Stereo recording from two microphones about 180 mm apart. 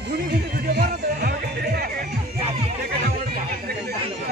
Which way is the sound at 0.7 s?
60° right (ahead or behind).